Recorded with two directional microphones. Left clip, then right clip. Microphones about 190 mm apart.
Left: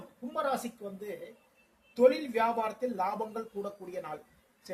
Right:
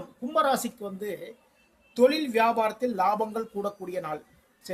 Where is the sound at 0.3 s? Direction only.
45° right (ahead or behind).